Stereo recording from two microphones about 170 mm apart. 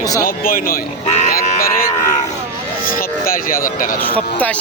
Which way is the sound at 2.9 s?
55° left (ahead or behind).